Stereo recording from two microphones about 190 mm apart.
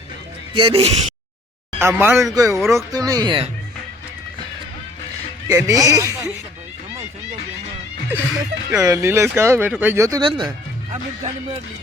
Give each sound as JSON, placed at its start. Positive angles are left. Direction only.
{"t": 0.5, "sound": "speech", "side_deg": -25}
{"t": 1.8, "sound": "speech", "side_deg": -10}
{"t": 5.5, "sound": "speech", "side_deg": -15}
{"t": 8.1, "sound": "speech", "side_deg": -15}